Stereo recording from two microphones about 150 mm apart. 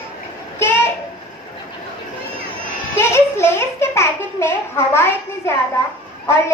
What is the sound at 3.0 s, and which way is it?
A child's voice, 15° left (ahead or behind).